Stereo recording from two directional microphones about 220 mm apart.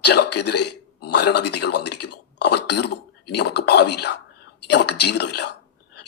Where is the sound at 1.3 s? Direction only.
50° left (ahead or behind).